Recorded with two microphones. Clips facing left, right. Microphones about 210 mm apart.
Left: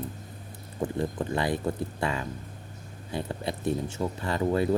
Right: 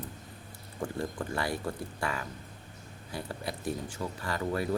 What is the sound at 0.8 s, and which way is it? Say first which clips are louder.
Speech: left 5 dB; 20° left (ahead or behind).